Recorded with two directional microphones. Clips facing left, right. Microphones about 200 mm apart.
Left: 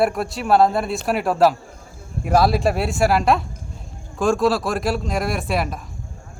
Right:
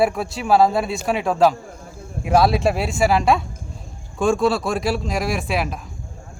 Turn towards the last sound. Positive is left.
turn(degrees=0)  # may be behind; listen again after turning